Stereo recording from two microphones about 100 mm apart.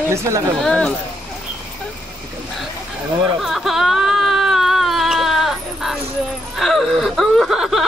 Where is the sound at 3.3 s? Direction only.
Centre (ahead or behind).